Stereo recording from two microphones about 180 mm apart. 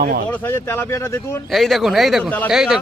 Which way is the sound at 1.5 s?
Centre (ahead or behind).